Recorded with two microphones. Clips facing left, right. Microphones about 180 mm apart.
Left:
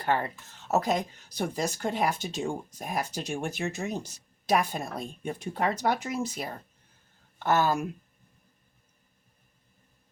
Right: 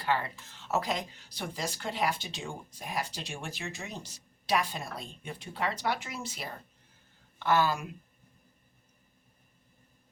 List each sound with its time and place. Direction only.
0.0 s speech: 50° left (ahead or behind)